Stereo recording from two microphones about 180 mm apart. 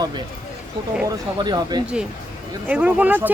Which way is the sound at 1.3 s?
25° right (ahead or behind).